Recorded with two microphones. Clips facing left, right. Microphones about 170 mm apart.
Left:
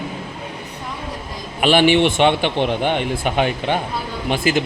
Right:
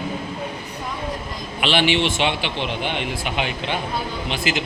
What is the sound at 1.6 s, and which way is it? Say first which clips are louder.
A man's voice: left 6 dB; 45° left (ahead or behind).